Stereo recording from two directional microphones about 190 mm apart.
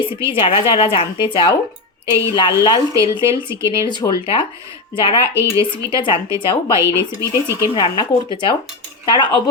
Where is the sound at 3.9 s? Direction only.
25° left (ahead or behind).